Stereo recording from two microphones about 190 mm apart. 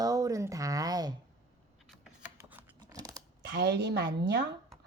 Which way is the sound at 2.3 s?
10° right (ahead or behind).